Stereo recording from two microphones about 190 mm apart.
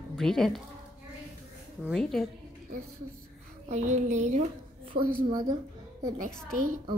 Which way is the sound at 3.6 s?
40° right (ahead or behind).